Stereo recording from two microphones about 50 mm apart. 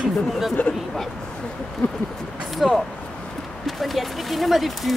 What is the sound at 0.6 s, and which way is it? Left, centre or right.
Speech, left.